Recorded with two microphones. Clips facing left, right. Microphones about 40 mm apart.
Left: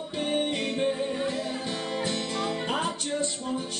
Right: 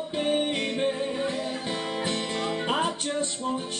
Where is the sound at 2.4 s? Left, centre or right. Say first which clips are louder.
Right 3 dB; centre.